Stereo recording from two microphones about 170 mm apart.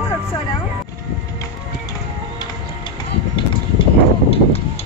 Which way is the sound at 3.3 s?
35° left (ahead or behind).